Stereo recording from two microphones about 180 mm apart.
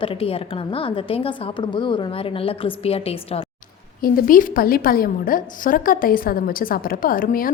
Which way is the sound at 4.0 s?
55° left (ahead or behind).